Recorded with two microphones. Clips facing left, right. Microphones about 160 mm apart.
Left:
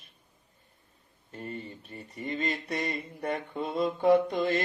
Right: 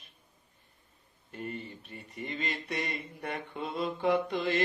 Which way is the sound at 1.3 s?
30° left (ahead or behind).